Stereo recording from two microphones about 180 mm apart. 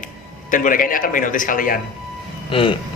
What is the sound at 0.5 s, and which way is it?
Speech, 50° left (ahead or behind).